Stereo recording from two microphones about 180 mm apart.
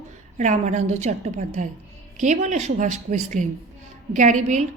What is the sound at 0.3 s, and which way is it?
A woman's voice, 40° right (ahead or behind).